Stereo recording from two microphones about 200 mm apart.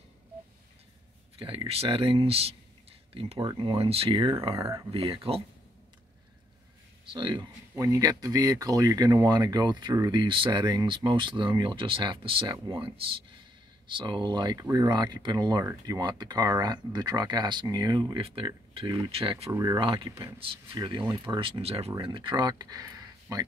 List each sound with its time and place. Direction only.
1.4 s speech: 25° right (ahead or behind)
4.9 s speech: 30° right (ahead or behind)
7.1 s speech: 25° right (ahead or behind)
19.5 s speech: 15° right (ahead or behind)